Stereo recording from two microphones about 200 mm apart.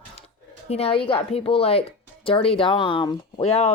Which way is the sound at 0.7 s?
30° left (ahead or behind).